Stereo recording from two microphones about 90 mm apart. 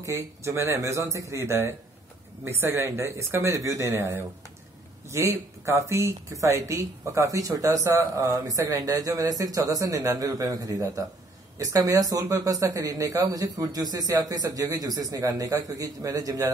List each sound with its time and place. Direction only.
0.0 s speech: 35° right (ahead or behind)